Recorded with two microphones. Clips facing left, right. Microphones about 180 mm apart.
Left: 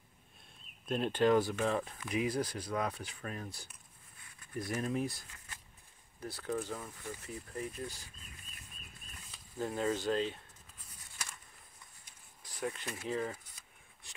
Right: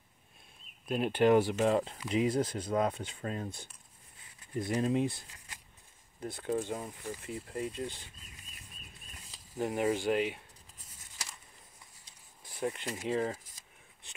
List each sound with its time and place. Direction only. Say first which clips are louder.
0.8 s speech: right 3 dB; 10° right (ahead or behind); by 3.6 s 25° right (ahead or behind)
4.2 s a sound: right 4 dB; 25° right (ahead or behind)
6.1 s speech: right 4 dB; 20° right (ahead or behind)
9.6 s speech: right 4 dB; 20° right (ahead or behind)
12.5 s speech: right 4 dB; 20° right (ahead or behind)